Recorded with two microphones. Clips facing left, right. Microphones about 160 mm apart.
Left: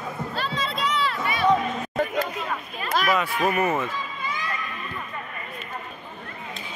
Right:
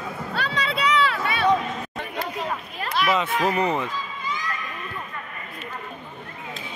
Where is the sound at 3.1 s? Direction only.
20° right (ahead or behind).